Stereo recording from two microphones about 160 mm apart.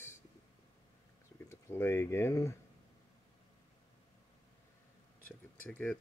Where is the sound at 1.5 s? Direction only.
15° left (ahead or behind).